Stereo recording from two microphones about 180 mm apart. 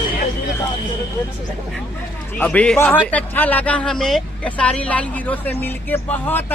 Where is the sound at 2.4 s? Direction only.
5° left (ahead or behind).